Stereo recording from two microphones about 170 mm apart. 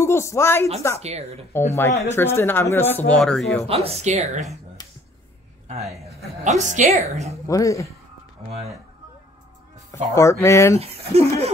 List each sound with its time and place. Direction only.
0.0 s speech: 15° left (ahead or behind)
0.9 s a woman's voice: 40° right (ahead or behind)
1.5 s speech: 15° left (ahead or behind)
3.6 s a woman's voice: 35° right (ahead or behind)
4.8 s a sound: 25° left (ahead or behind)
5.9 s a man's voice: centre (ahead or behind)
6.4 s a woman's voice: 45° right (ahead or behind)
7.4 s speech: 20° left (ahead or behind)
10.1 s speech: 15° left (ahead or behind)
10.8 s a woman's voice: 35° right (ahead or behind)